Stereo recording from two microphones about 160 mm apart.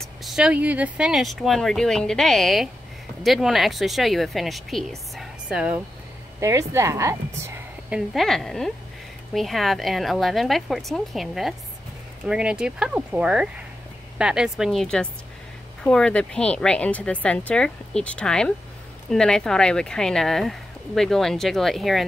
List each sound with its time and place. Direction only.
0.0 s speech: centre (ahead or behind)
6.4 s a woman's voice: 15° right (ahead or behind)
7.9 s a woman's voice: centre (ahead or behind)